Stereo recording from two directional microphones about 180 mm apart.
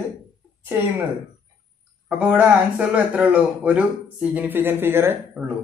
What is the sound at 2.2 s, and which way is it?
Speech, 5° right (ahead or behind).